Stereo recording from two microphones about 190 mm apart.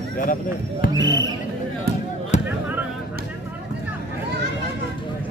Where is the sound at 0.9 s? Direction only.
20° right (ahead or behind).